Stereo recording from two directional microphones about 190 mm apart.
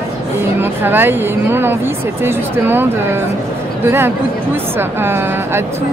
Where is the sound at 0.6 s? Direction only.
10° right (ahead or behind).